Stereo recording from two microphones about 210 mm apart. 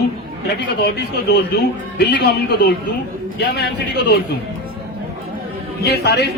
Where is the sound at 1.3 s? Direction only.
50° left (ahead or behind).